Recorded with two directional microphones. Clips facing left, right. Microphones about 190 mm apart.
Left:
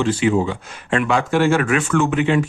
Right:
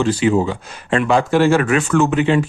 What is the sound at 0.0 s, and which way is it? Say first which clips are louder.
Speech: right 2 dB; 35° right (ahead or behind).